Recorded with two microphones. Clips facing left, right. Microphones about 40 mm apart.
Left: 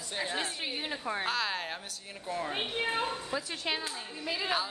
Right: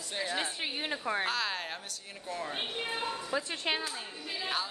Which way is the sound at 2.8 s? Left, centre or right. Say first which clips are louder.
Left 6 dB; left.